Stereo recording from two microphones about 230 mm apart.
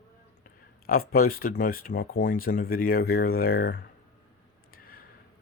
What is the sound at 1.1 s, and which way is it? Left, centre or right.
Speech, left.